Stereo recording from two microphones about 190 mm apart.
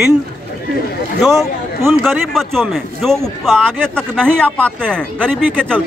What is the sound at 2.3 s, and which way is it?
A man's voice, centre (ahead or behind).